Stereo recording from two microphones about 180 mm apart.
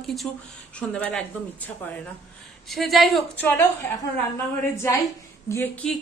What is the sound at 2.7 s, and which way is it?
A woman's voice, centre (ahead or behind).